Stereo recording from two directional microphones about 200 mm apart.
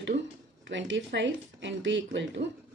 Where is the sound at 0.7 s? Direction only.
65° right (ahead or behind).